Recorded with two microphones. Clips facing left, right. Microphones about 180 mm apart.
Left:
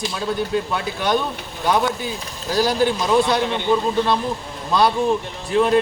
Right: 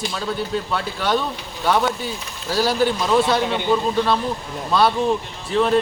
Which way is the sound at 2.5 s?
15° left (ahead or behind).